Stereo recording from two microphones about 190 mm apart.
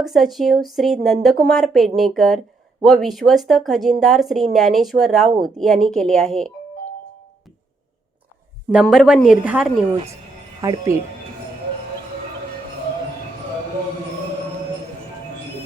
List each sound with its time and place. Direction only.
0.0 s speech: centre (ahead or behind)
8.7 s speech: centre (ahead or behind)
10.6 s speech: 20° right (ahead or behind)